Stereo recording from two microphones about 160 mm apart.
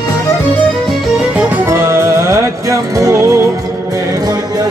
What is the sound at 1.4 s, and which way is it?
Music, 15° right (ahead or behind).